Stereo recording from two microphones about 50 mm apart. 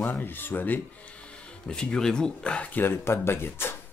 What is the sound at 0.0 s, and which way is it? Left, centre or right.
Speech, left.